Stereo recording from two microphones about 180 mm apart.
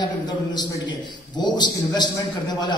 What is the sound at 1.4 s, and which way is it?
Speech, 25° left (ahead or behind).